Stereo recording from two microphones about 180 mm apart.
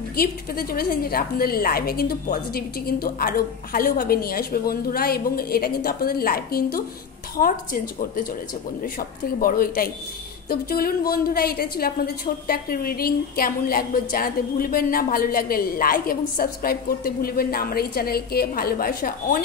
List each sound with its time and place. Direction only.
0.1 s a woman's voice: 55° left (ahead or behind)